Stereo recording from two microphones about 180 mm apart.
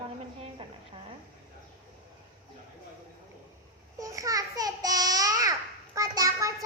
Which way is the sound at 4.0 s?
20° right (ahead or behind).